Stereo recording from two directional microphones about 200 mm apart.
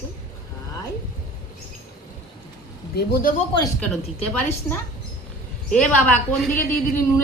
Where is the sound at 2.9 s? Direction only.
45° left (ahead or behind).